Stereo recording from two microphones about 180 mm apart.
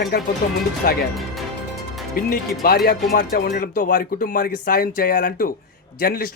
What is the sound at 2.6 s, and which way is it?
Speech, 60° left (ahead or behind).